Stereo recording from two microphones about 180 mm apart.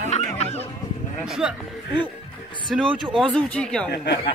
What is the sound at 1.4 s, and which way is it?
Speech, 5° right (ahead or behind).